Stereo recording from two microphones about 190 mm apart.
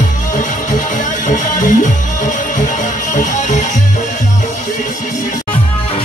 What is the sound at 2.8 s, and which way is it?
Music, 40° left (ahead or behind).